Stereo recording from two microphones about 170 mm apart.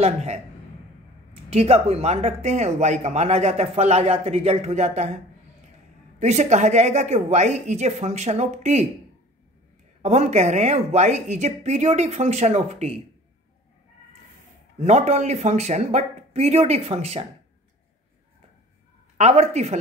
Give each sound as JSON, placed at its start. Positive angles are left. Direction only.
{"t": 0.0, "sound": "speech", "side_deg": -40}
{"t": 10.0, "sound": "speech", "side_deg": -40}
{"t": 14.8, "sound": "speech", "side_deg": -40}
{"t": 19.1, "sound": "speech", "side_deg": -40}